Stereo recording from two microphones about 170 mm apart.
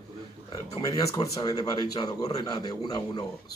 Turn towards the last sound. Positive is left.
turn(degrees=25)  # may be behind; listen again after turning